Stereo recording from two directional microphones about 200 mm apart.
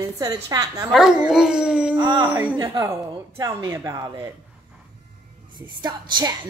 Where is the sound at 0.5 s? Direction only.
20° right (ahead or behind).